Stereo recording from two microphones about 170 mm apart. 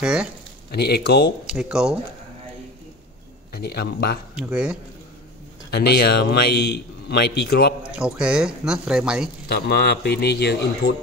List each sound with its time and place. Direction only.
0.0 s speech: 5° right (ahead or behind)
0.7 s a man's voice: 65° left (ahead or behind)
1.5 s speech: 5° right (ahead or behind)
3.5 s speech: 65° left (ahead or behind)
4.4 s speech: 5° right (ahead or behind)
5.7 s a man's voice: 70° left (ahead or behind)
7.9 s speech: 5° right (ahead or behind)
9.5 s a man's voice: 70° left (ahead or behind)